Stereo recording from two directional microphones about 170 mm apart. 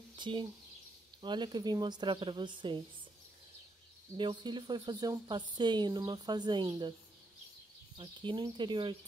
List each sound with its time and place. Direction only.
0.1 s speech: 30° right (ahead or behind)
4.2 s speech: 25° right (ahead or behind)
8.0 s speech: 30° right (ahead or behind)